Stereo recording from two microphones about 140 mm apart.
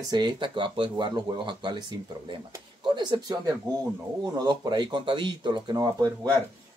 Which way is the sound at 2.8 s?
35° right (ahead or behind).